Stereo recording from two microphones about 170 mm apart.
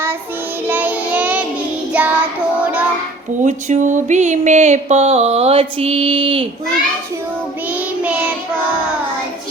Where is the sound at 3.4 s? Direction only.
45° right (ahead or behind).